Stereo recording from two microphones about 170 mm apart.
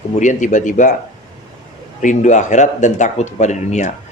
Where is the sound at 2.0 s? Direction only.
45° left (ahead or behind).